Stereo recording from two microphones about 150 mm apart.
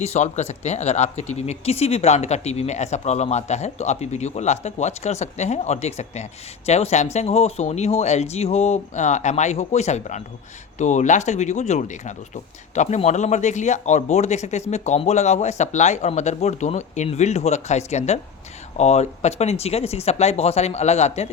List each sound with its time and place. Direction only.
0.0 s speech: 45° left (ahead or behind)